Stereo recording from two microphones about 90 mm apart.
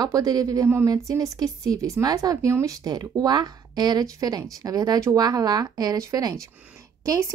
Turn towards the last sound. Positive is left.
turn(degrees=-30)  # may be behind; listen again after turning